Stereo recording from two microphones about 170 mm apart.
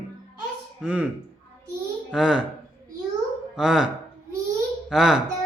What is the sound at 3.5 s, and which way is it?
Speech, 5° right (ahead or behind).